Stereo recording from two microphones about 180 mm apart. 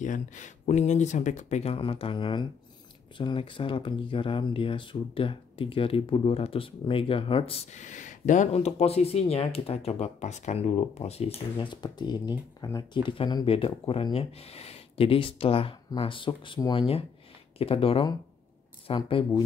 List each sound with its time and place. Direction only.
0.0 s speech: 45° left (ahead or behind); by 19.4 s 25° left (ahead or behind)